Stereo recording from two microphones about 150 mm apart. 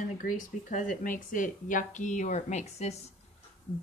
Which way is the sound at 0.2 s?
65° left (ahead or behind).